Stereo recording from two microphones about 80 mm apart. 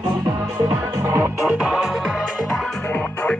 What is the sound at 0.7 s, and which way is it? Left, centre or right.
Music, right.